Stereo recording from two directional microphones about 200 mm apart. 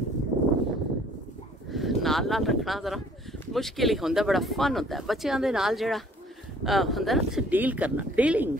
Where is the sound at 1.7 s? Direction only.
Centre (ahead or behind).